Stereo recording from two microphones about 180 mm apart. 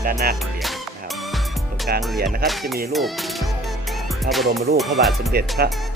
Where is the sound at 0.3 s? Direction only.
Centre (ahead or behind).